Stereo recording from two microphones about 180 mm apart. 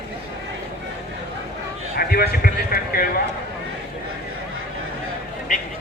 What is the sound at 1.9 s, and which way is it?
Speech, 60° left (ahead or behind).